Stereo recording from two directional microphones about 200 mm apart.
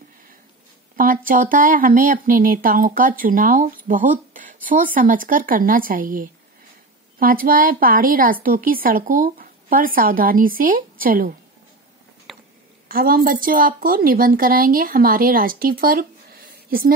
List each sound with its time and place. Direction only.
0.9 s speech: 45° right (ahead or behind)
12.3 s a sound: centre (ahead or behind)
12.8 s speech: 45° right (ahead or behind)